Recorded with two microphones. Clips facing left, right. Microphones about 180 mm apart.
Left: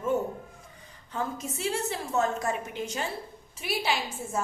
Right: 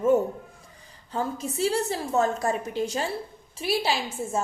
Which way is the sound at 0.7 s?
35° right (ahead or behind).